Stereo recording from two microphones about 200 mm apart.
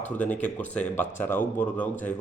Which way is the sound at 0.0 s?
10° left (ahead or behind).